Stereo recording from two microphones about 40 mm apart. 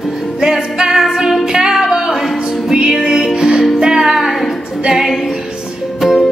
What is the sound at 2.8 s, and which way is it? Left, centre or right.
Music, centre.